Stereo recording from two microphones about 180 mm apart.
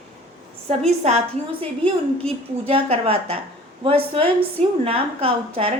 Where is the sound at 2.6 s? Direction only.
35° right (ahead or behind).